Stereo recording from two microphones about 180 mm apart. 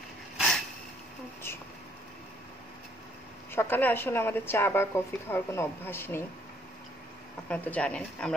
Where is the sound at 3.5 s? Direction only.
10° left (ahead or behind).